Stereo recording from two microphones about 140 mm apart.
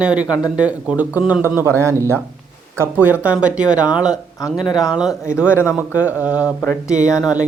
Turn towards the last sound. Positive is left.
turn(degrees=25)  # may be behind; listen again after turning